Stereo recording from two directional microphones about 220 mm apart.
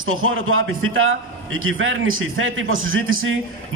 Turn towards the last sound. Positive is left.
turn(degrees=-65)  # may be behind; listen again after turning